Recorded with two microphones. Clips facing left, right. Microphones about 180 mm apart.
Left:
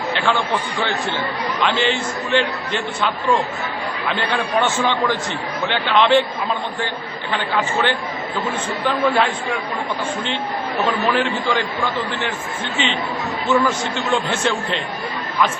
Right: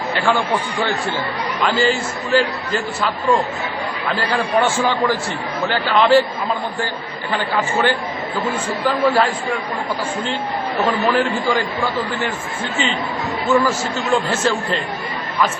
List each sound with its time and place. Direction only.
0.2 s a man's voice: 10° right (ahead or behind)
4.1 s a man's voice: 5° right (ahead or behind)
7.3 s a man's voice: 10° right (ahead or behind)
9.0 s a man's voice: 10° right (ahead or behind)
11.0 s a man's voice: 10° right (ahead or behind)
12.7 s speech: 45° right (ahead or behind)
13.5 s a man's voice: 10° right (ahead or behind)